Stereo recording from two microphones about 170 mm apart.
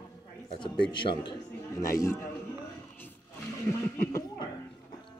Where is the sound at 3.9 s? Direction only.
15° left (ahead or behind).